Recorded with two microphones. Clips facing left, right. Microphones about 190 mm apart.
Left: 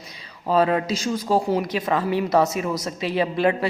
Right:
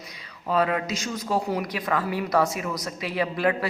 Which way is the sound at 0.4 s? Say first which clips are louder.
Left 4 dB; 30° left (ahead or behind).